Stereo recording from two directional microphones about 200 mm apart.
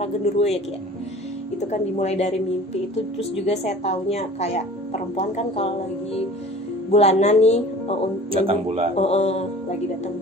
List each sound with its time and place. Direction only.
0.0 s a woman's voice: 30° left (ahead or behind)
1.6 s a woman's voice: 35° left (ahead or behind)
6.9 s a woman's voice: 30° left (ahead or behind)
8.3 s speech: 30° right (ahead or behind)
8.9 s music: 35° left (ahead or behind)